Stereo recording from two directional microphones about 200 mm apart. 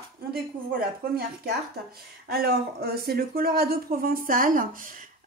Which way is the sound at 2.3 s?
50° right (ahead or behind).